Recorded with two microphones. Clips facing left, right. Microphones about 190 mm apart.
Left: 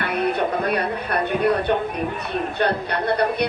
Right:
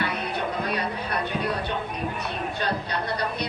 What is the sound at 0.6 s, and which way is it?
Speech, 55° left (ahead or behind).